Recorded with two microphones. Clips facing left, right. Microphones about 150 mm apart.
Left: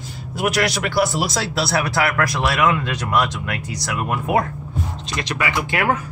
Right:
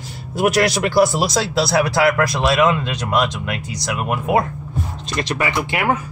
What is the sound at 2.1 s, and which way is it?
Speech, 20° right (ahead or behind).